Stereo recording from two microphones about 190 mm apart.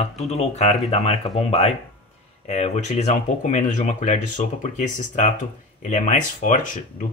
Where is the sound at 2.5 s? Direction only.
35° left (ahead or behind).